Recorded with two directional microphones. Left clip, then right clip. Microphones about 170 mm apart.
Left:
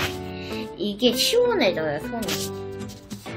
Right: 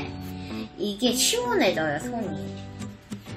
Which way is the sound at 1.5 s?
40° left (ahead or behind).